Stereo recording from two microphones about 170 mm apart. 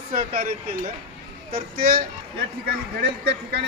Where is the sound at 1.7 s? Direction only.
60° right (ahead or behind).